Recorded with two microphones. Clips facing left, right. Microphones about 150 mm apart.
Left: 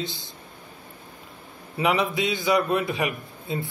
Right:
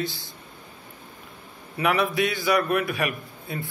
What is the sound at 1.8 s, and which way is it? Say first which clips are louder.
A man's voice: even; 20° left (ahead or behind).